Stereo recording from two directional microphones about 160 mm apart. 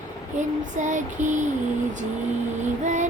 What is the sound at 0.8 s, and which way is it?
Female singing, 50° right (ahead or behind).